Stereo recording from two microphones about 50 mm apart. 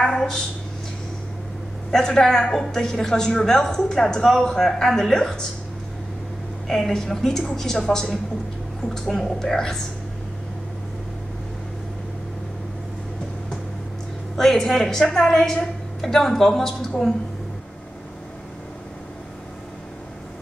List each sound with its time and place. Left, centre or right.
0.0 s a sound: centre
1.9 s a woman's voice: centre
6.7 s a woman's voice: centre
14.3 s a woman's voice: centre